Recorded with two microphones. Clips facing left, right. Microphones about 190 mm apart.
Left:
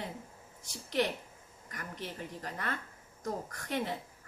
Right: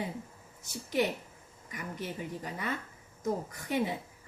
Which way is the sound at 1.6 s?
5° right (ahead or behind).